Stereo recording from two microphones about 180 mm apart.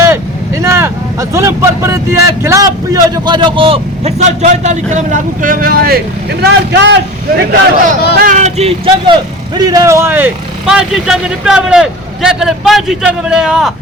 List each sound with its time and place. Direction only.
0.0 s vehicle: 15° right (ahead or behind)
2.4 s a man's voice: 15° right (ahead or behind); by 6.0 s 55° right (ahead or behind)
6.4 s speech: 75° right (ahead or behind)
8.2 s a man's voice: 45° right (ahead or behind)
9.6 s speech: 20° right (ahead or behind); by 13.7 s centre (ahead or behind)